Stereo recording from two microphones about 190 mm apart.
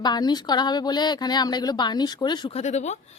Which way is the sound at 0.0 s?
20° left (ahead or behind).